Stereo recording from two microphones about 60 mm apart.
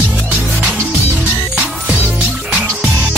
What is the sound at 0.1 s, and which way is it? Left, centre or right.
Music, right.